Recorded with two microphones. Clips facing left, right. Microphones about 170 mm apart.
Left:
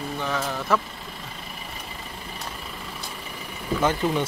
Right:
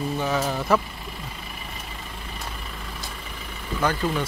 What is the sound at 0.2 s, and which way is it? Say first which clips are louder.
Vehicle: right 1 dB; 10° right (ahead or behind).